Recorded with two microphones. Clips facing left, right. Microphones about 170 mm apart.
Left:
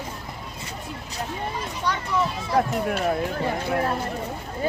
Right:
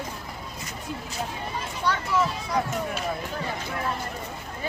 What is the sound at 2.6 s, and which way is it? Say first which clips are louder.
Speech: left 6 dB; 55° left (ahead or behind).